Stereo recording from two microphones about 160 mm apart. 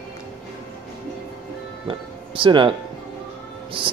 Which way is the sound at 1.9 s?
30° right (ahead or behind).